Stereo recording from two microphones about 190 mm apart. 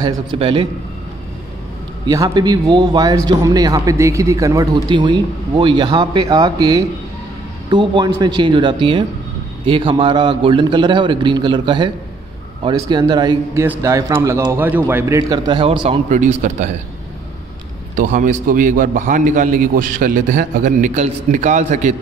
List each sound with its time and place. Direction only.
0.0 s a man's voice: 25° right (ahead or behind)
2.0 s a man's voice: 20° right (ahead or behind); by 16.7 s 40° right (ahead or behind)
17.9 s a man's voice: 45° right (ahead or behind)